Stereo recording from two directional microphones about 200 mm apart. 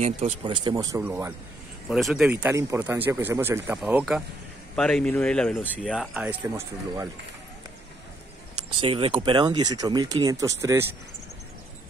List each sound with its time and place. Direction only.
0.0 s speech: 30° right (ahead or behind)
0.9 s speech: 10° right (ahead or behind)
2.3 s speech: 15° right (ahead or behind)
8.5 s speech: 25° right (ahead or behind)